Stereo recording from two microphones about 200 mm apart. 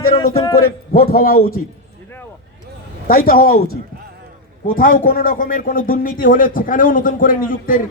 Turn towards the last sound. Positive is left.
turn(degrees=45)  # may be behind; listen again after turning